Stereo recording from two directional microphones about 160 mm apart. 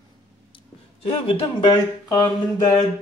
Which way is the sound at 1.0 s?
35° left (ahead or behind).